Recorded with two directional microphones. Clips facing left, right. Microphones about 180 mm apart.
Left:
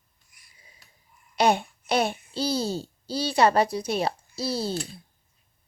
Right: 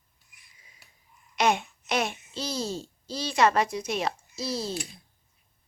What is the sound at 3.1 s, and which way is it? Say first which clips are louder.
Speech: left 2 dB; 35° left (ahead or behind).